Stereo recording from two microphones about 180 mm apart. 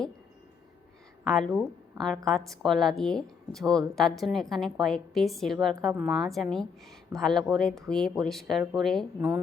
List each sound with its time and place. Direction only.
1.2 s a woman's voice: centre (ahead or behind)
5.9 s a woman's voice: 10° right (ahead or behind)
6.1 s a woman's voice: centre (ahead or behind)